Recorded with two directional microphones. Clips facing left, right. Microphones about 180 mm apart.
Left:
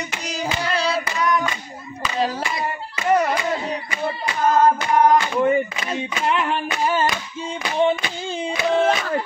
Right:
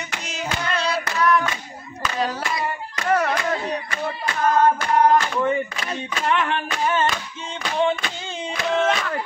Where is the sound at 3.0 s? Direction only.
15° left (ahead or behind).